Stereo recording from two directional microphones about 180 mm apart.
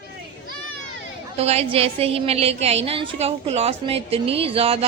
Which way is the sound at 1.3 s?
35° right (ahead or behind).